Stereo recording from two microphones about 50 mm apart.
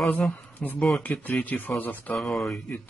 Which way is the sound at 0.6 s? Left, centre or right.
Left.